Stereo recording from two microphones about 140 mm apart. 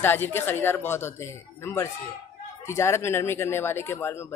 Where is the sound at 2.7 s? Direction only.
20° left (ahead or behind).